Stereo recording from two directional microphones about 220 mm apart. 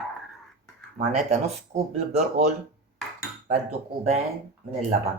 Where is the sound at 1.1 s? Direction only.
30° right (ahead or behind).